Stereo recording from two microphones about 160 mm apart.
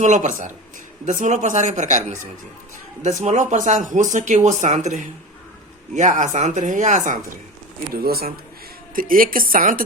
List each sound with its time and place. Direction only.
0.0 s speech: 50° right (ahead or behind)
8.0 s a man's voice: 75° right (ahead or behind)
9.0 s a woman's voice: 60° right (ahead or behind)